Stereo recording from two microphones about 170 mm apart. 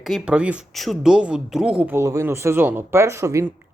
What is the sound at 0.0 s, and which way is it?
Speech, 5° right (ahead or behind).